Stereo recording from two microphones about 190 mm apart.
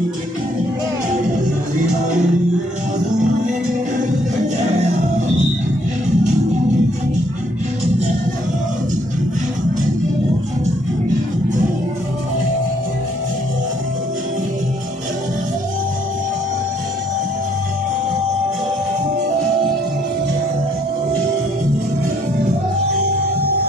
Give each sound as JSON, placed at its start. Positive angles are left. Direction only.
{"t": 6.0, "sound": "music", "side_deg": -35}